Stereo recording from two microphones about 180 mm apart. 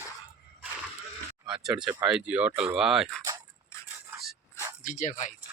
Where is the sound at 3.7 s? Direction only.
15° left (ahead or behind).